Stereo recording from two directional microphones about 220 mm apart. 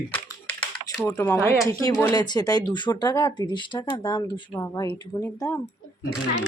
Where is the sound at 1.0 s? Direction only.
10° left (ahead or behind).